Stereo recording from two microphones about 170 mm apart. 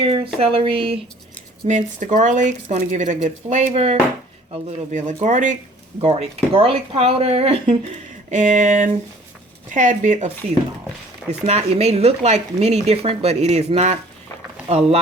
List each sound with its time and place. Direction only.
0.0 s a sound: 35° right (ahead or behind)
0.3 s speech: 30° right (ahead or behind)
1.6 s speech: 45° right (ahead or behind)
8.3 s speech: 45° right (ahead or behind)
11.4 s speech: 40° right (ahead or behind)